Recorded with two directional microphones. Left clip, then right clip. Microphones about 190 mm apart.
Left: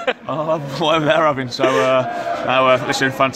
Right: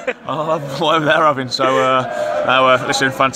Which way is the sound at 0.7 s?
5° left (ahead or behind).